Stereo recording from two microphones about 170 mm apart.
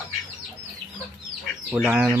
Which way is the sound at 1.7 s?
5° right (ahead or behind).